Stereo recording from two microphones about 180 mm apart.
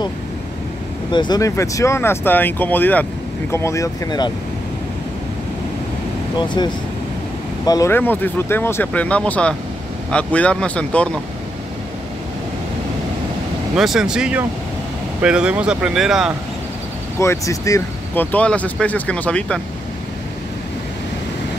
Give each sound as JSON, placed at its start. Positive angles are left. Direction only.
{"t": 1.1, "sound": "speech", "side_deg": 25}
{"t": 7.6, "sound": "speech", "side_deg": 20}
{"t": 13.7, "sound": "speech", "side_deg": -5}
{"t": 17.2, "sound": "speech", "side_deg": 15}